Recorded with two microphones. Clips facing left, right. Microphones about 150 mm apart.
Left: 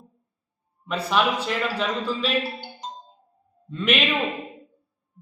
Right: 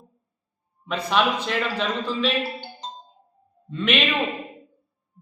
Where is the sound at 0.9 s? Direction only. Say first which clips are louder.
Even; 5° left (ahead or behind).